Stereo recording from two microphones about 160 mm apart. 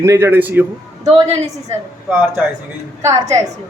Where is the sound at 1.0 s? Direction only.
40° right (ahead or behind).